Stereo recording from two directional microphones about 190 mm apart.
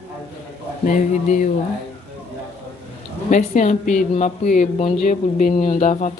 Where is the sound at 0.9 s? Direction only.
40° left (ahead or behind).